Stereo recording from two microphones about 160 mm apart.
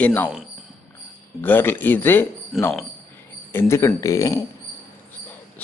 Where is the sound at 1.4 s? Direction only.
10° left (ahead or behind).